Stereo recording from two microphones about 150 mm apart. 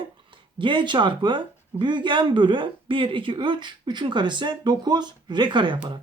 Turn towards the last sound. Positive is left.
turn(degrees=-35)  # may be behind; listen again after turning